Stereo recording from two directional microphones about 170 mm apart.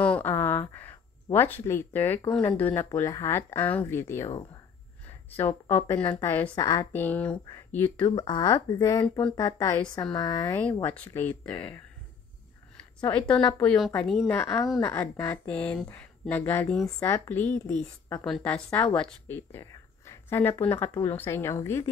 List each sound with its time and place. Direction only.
0.0 s speech: 10° left (ahead or behind)
6.5 s speech: 25° left (ahead or behind)
6.9 s speech: 10° left (ahead or behind)
8.0 s speech: 25° left (ahead or behind); by 11.5 s 10° left (ahead or behind)
13.1 s a woman's voice: 5° left (ahead or behind)
14.2 s a woman's voice: 15° left (ahead or behind)